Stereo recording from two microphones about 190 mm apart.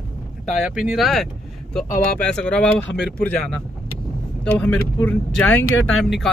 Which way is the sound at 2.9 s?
65° left (ahead or behind).